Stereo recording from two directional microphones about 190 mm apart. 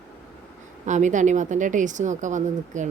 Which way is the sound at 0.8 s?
40° right (ahead or behind).